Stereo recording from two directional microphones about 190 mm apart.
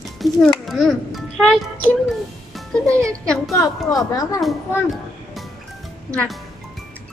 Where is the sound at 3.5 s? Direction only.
20° left (ahead or behind).